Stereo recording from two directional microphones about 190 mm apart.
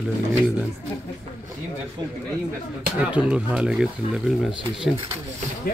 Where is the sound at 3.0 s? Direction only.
5° right (ahead or behind).